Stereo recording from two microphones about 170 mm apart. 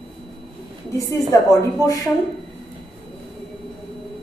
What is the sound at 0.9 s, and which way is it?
A woman's voice, 20° left (ahead or behind).